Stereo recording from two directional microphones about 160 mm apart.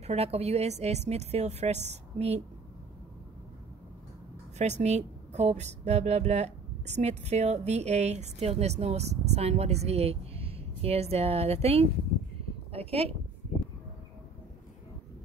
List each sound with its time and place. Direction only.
0.0 s a woman's voice: 40° right (ahead or behind)
4.6 s a woman's voice: 45° right (ahead or behind)